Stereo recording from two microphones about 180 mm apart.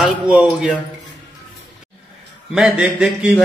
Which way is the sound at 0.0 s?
5° right (ahead or behind).